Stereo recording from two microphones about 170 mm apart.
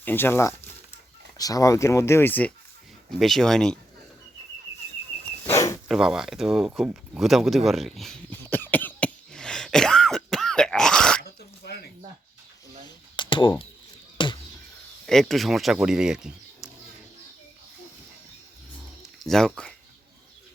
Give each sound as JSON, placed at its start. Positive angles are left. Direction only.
{"t": 0.0, "sound": "speech", "side_deg": 10}
{"t": 5.5, "sound": "zipper", "side_deg": 15}
{"t": 5.9, "sound": "a sound", "side_deg": -5}
{"t": 11.2, "sound": "dog", "side_deg": 70}
{"t": 13.1, "sound": "a sound", "side_deg": 30}
{"t": 15.0, "sound": "speech", "side_deg": 0}
{"t": 19.0, "sound": "speech", "side_deg": 0}